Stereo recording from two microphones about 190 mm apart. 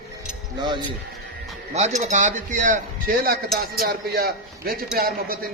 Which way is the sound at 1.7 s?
35° right (ahead or behind).